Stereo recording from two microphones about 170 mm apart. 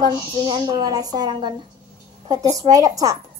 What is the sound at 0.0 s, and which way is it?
A child's voice, 25° right (ahead or behind).